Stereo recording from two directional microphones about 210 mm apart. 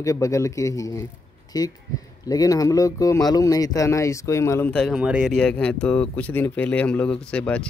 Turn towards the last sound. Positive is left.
turn(degrees=5)  # may be behind; listen again after turning